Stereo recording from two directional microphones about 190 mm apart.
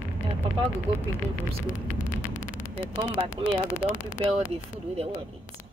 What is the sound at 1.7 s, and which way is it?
Vehicle, 45° left (ahead or behind).